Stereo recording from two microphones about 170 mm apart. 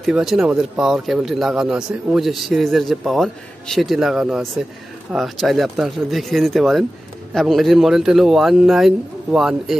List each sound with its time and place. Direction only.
0.0 s a man's voice: centre (ahead or behind)